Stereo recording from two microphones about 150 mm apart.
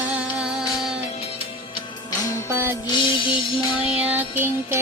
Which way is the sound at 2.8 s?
30° left (ahead or behind).